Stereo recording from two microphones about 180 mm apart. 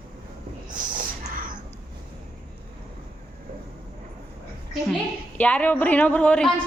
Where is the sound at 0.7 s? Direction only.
50° right (ahead or behind).